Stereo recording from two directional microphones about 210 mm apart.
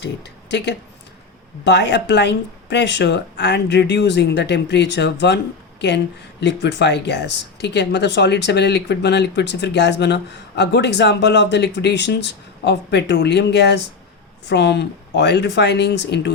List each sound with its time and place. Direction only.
0.0 s speech: 55° left (ahead or behind)
6.4 s speech: 55° left (ahead or behind)